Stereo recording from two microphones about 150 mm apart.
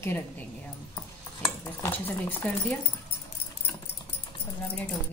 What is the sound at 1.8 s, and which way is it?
Speech, 10° left (ahead or behind).